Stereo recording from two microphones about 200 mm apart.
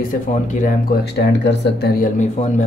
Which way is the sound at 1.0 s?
55° left (ahead or behind).